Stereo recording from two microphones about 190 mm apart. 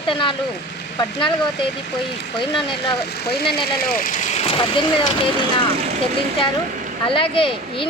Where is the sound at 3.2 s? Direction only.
55° left (ahead or behind); by 5.1 s 25° left (ahead or behind).